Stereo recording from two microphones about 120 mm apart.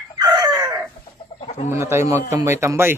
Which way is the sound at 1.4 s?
65° left (ahead or behind).